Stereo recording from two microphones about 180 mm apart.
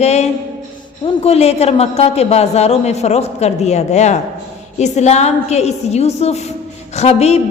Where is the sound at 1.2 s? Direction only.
35° left (ahead or behind).